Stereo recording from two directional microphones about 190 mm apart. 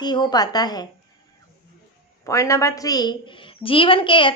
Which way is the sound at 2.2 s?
15° left (ahead or behind).